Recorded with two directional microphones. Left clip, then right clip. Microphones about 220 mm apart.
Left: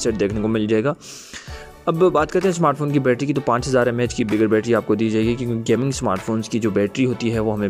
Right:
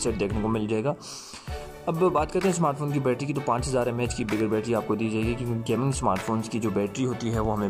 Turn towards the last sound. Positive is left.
turn(degrees=25)  # may be behind; listen again after turning